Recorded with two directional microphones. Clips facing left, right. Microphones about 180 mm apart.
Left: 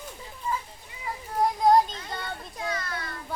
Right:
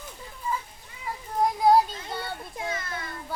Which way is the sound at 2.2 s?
25° right (ahead or behind).